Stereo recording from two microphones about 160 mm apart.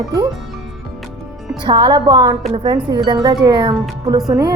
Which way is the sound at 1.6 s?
30° right (ahead or behind).